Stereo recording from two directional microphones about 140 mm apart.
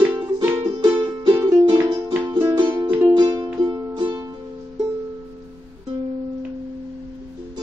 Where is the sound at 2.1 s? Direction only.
15° right (ahead or behind).